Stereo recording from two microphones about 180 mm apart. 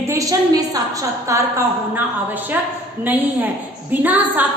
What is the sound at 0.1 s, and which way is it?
A woman's voice, 20° right (ahead or behind).